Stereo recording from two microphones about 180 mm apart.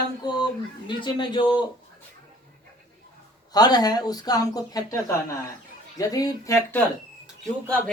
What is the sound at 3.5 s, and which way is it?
Speech, 20° left (ahead or behind).